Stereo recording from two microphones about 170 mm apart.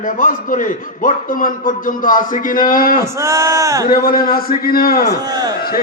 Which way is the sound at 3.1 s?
15° right (ahead or behind).